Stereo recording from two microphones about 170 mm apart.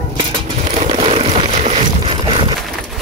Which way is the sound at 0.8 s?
35° right (ahead or behind).